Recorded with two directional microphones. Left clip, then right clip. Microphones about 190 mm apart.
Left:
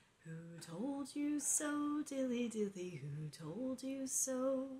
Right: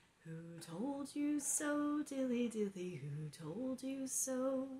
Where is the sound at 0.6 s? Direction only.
Centre (ahead or behind).